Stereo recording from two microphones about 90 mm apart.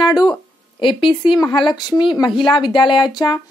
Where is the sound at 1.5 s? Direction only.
60° left (ahead or behind).